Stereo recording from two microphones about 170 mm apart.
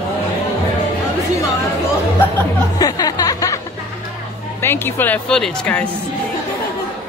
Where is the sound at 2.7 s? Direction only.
20° left (ahead or behind).